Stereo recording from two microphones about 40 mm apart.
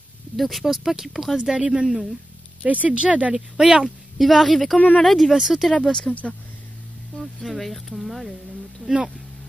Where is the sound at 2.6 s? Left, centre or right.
Right.